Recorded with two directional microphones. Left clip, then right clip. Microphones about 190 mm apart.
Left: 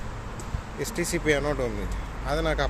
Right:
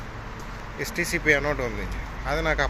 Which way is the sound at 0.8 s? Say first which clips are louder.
Right 2 dB; 15° left (ahead or behind).